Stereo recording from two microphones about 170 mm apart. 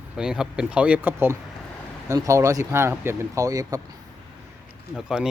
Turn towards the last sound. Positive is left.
turn(degrees=-5)  # may be behind; listen again after turning